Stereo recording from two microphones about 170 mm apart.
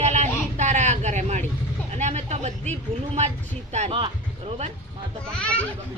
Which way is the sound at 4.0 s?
35° right (ahead or behind).